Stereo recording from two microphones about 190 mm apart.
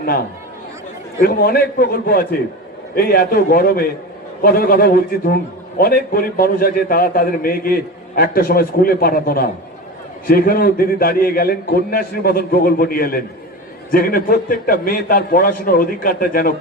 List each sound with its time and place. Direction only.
1.2 s a man's voice: 50° left (ahead or behind)